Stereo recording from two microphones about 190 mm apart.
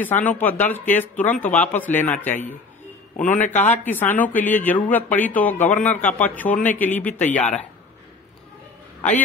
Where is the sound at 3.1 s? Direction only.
45° left (ahead or behind).